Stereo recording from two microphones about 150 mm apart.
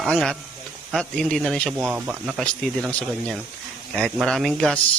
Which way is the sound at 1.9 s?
10° right (ahead or behind).